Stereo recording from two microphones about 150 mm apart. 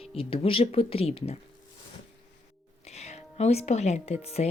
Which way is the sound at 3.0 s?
45° left (ahead or behind).